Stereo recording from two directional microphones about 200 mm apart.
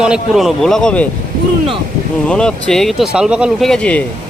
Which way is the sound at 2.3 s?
5° left (ahead or behind).